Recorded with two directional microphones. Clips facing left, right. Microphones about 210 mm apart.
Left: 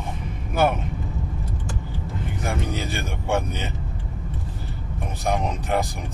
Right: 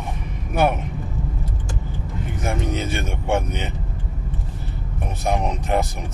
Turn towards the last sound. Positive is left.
turn(degrees=-20)  # may be behind; listen again after turning